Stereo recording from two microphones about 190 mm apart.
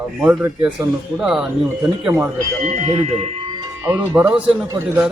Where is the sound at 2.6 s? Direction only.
35° right (ahead or behind).